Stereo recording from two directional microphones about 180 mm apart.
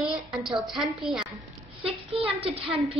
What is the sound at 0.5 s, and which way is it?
Speech, centre (ahead or behind).